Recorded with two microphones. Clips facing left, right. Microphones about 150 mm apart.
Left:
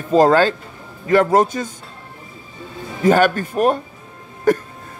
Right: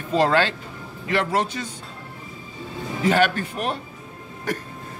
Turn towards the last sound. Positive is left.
turn(degrees=50)  # may be behind; listen again after turning